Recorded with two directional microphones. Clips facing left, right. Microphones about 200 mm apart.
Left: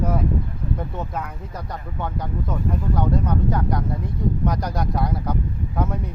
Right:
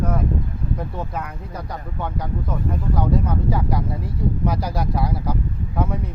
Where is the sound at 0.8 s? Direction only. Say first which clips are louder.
Right 1 dB; centre (ahead or behind).